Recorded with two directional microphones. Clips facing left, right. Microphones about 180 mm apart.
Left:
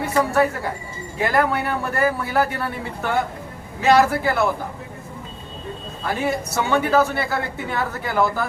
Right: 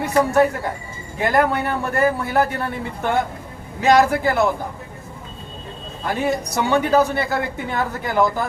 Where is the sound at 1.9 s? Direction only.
20° right (ahead or behind).